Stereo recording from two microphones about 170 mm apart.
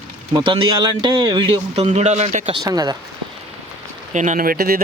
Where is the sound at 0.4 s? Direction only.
30° right (ahead or behind).